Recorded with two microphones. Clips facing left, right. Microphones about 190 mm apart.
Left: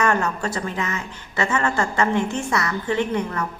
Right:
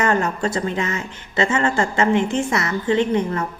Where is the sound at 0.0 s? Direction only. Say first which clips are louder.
Right 2 dB; 20° right (ahead or behind).